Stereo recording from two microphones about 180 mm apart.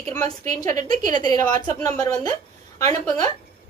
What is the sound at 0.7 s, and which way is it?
A woman's voice, 20° left (ahead or behind).